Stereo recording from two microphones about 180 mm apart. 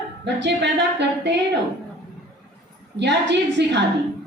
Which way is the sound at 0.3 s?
75° right (ahead or behind).